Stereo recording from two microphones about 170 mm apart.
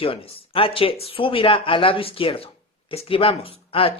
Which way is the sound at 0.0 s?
35° left (ahead or behind).